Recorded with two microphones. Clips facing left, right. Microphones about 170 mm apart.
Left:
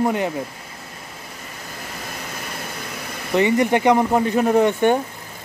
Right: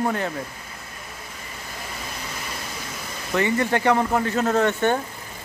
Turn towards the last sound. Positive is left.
turn(degrees=15)  # may be behind; listen again after turning